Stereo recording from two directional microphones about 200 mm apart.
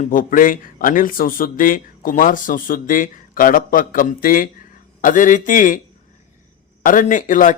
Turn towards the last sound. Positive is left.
turn(degrees=40)  # may be behind; listen again after turning